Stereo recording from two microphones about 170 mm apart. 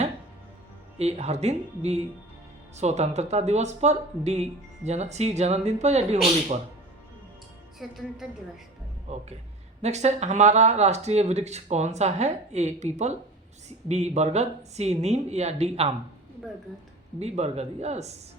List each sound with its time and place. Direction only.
0.9 s speech: 40° right (ahead or behind)
7.8 s a woman's voice: centre (ahead or behind)
9.1 s speech: 40° right (ahead or behind)
17.2 s speech: 40° right (ahead or behind)